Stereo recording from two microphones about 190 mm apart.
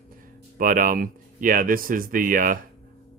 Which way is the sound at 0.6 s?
45° right (ahead or behind).